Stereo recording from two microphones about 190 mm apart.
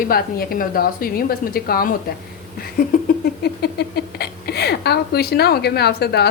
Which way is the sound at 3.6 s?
55° left (ahead or behind).